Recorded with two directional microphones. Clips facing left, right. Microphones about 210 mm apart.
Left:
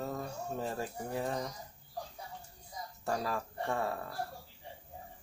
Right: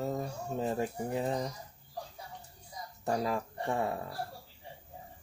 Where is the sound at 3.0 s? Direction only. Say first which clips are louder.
Right 4 dB; 20° right (ahead or behind).